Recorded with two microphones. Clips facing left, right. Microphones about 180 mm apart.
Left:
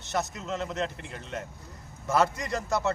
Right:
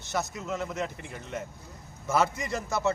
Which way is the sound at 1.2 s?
15° right (ahead or behind).